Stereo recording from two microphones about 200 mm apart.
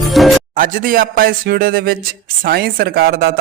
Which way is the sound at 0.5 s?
45° right (ahead or behind).